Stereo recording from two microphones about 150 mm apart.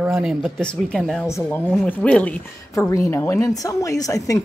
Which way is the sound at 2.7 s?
20° left (ahead or behind).